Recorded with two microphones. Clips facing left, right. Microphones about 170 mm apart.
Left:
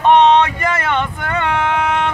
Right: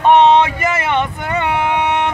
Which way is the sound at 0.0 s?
5° right (ahead or behind).